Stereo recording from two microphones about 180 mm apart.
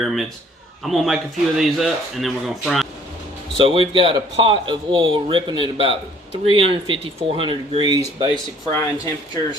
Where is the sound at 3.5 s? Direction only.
30° right (ahead or behind).